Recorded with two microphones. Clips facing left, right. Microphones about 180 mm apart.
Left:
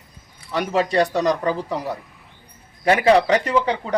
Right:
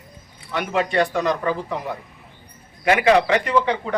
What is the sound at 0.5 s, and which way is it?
A man's voice, 35° left (ahead or behind).